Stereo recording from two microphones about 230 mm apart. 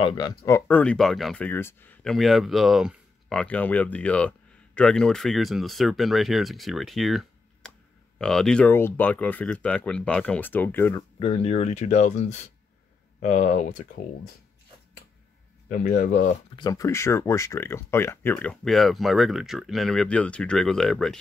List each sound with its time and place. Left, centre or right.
0.0 s speech: centre
11.1 s speech: left
15.7 s speech: left
16.5 s speech: centre